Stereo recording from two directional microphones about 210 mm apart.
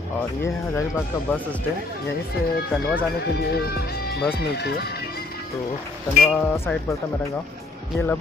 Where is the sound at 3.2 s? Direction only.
50° left (ahead or behind).